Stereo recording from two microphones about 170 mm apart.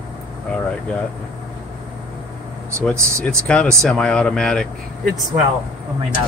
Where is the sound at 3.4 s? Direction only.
5° left (ahead or behind).